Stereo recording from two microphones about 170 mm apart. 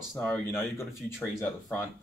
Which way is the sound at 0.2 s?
10° left (ahead or behind).